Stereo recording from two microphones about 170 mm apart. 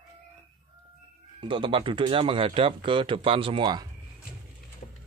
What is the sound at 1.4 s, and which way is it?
Speech, 30° right (ahead or behind).